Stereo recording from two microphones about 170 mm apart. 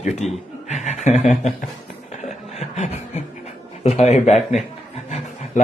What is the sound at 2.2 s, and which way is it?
Chuckle, 40° left (ahead or behind).